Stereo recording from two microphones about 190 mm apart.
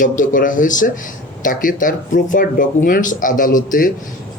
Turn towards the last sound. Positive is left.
turn(degrees=45)  # may be behind; listen again after turning